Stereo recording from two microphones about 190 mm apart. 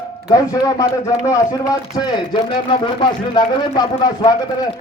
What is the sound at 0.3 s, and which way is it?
A man's voice, 20° left (ahead or behind).